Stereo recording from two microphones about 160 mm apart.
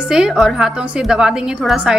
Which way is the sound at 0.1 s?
5° right (ahead or behind).